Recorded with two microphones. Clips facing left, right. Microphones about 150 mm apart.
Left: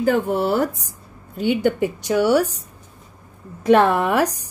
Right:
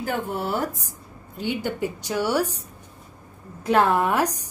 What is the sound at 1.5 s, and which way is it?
Speech, 65° left (ahead or behind).